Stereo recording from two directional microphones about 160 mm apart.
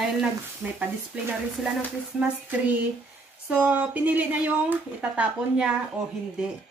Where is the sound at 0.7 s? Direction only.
5° right (ahead or behind).